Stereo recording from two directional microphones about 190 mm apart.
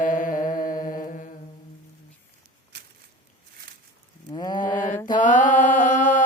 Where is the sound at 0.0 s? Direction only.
45° left (ahead or behind).